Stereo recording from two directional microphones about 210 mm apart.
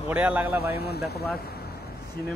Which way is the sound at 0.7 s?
50° left (ahead or behind).